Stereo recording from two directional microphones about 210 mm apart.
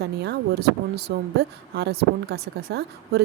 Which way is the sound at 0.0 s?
50° right (ahead or behind).